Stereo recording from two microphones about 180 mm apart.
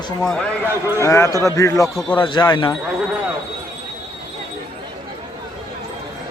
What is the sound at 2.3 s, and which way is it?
Speech, 25° left (ahead or behind).